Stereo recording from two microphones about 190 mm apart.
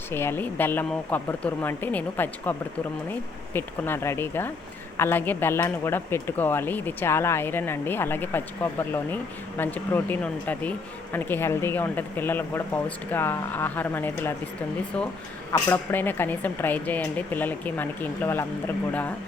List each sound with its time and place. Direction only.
0.1 s speech: 10° left (ahead or behind)
15.5 s speech: 10° left (ahead or behind)